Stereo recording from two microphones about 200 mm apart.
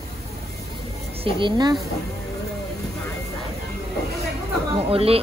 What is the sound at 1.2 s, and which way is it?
Speech, 25° right (ahead or behind).